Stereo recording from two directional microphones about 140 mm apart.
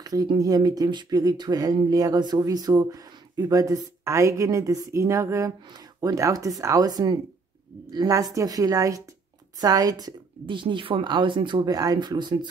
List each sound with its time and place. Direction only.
0.0 s speech: 25° right (ahead or behind)